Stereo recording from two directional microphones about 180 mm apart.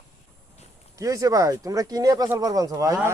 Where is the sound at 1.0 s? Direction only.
20° right (ahead or behind).